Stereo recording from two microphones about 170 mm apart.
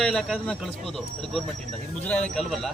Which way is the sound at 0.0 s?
Centre (ahead or behind).